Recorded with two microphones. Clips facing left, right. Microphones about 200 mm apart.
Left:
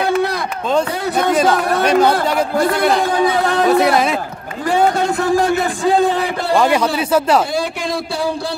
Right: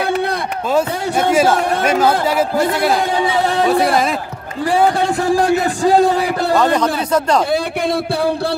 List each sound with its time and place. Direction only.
1.3 s a man's voice: 5° right (ahead or behind)
4.6 s speech: 30° right (ahead or behind)
6.5 s speech: 10° left (ahead or behind)